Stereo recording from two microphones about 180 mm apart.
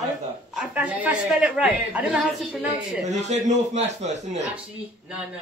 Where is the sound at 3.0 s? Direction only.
40° right (ahead or behind).